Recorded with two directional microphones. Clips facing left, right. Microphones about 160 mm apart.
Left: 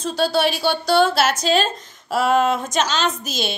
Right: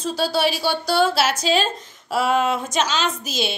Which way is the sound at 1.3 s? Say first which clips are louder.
Left 1 dB; 45° left (ahead or behind).